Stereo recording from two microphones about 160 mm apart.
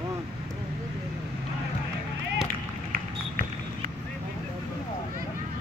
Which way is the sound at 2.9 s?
65° right (ahead or behind).